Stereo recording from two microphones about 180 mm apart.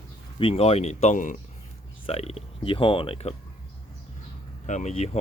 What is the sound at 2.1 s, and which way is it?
Speech, 35° left (ahead or behind).